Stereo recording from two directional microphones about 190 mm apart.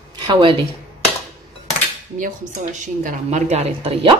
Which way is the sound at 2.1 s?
45° right (ahead or behind).